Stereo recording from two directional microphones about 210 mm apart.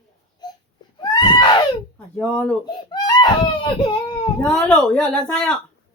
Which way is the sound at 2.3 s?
5° left (ahead or behind).